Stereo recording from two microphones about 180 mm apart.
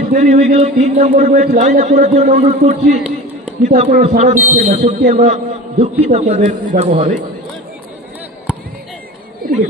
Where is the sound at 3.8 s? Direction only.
40° right (ahead or behind).